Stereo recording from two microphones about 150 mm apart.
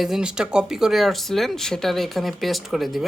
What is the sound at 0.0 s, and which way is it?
Speech, 5° right (ahead or behind).